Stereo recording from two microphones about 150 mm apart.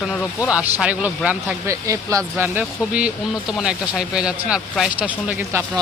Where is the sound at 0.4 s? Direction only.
5° right (ahead or behind).